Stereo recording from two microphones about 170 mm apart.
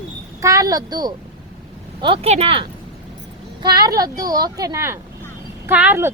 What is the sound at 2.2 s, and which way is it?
A woman's voice, 35° right (ahead or behind).